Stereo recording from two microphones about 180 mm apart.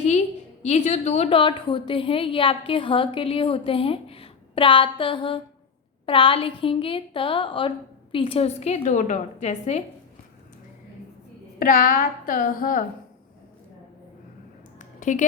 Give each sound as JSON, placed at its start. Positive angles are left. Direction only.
{"t": 0.6, "sound": "a woman's voice", "side_deg": 40}
{"t": 11.6, "sound": "speech", "side_deg": 50}
{"t": 15.0, "sound": "a woman's voice", "side_deg": 45}